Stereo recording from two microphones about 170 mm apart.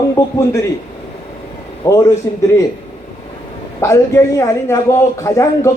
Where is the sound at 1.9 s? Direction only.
15° left (ahead or behind).